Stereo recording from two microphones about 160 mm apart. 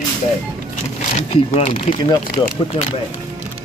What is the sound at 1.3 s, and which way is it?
Speech, 40° left (ahead or behind).